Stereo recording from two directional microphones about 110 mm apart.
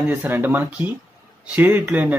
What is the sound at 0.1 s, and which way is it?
Speech, 20° right (ahead or behind).